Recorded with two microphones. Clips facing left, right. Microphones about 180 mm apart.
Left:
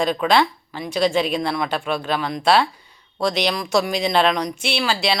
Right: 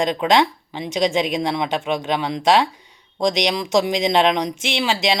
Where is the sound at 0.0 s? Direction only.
20° right (ahead or behind).